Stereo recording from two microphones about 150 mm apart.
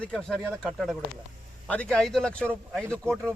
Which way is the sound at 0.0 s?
5° left (ahead or behind).